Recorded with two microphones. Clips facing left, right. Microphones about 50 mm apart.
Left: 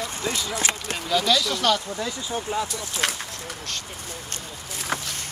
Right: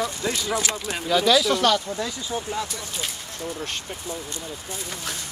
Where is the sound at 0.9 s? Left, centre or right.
Centre.